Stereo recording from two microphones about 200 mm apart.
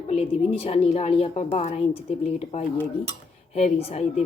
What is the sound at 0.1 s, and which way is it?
Speech, 30° left (ahead or behind).